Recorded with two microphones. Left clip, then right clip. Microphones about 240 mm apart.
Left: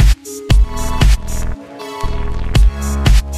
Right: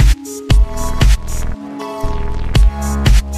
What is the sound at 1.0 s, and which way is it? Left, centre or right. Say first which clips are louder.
Music: even; right.